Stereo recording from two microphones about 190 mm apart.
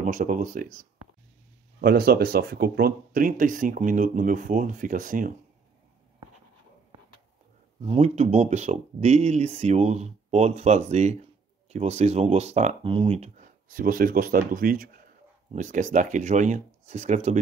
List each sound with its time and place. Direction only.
0.0 s speech: 45° right (ahead or behind)
1.8 s speech: 55° right (ahead or behind)
7.8 s speech: 35° right (ahead or behind)
13.7 s speech: 50° right (ahead or behind)